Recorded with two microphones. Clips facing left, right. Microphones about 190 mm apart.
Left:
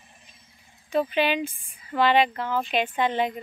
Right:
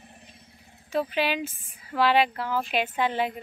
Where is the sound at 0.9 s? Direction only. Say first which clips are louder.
Left 3 dB; 5° right (ahead or behind).